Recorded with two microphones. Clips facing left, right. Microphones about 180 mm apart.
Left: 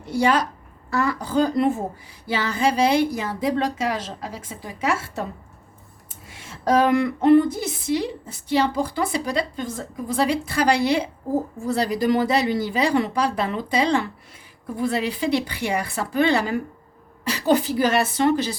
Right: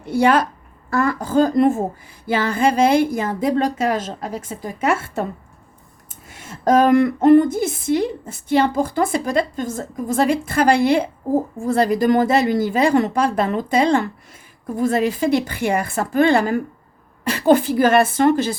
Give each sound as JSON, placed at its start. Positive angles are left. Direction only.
{"t": 0.0, "sound": "speech", "side_deg": -55}